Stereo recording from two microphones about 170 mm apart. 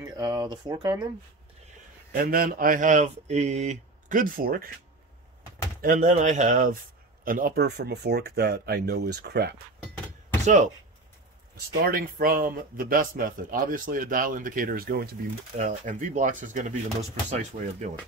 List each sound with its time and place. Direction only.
0.0 s speech: 25° right (ahead or behind)
2.1 s speech: 60° right (ahead or behind)
5.8 s speech: 50° right (ahead or behind); by 9.6 s 70° right (ahead or behind)
10.4 s speech: 45° right (ahead or behind)
11.8 s speech: 60° right (ahead or behind)
15.5 s speech: 45° right (ahead or behind)